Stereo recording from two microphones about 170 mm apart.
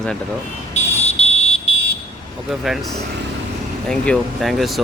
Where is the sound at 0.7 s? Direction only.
35° left (ahead or behind).